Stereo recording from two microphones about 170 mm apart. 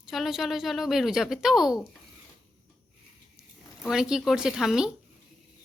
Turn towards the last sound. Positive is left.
turn(degrees=-5)  # may be behind; listen again after turning